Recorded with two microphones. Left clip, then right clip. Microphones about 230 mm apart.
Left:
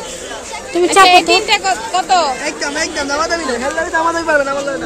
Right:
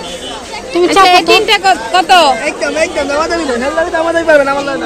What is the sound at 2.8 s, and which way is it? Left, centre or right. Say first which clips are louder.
Speech: right 4 dB; centre.